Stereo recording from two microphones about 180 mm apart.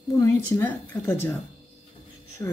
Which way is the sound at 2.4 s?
15° left (ahead or behind).